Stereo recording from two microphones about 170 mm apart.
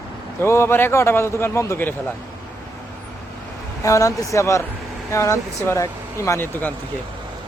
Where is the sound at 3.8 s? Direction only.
20° left (ahead or behind).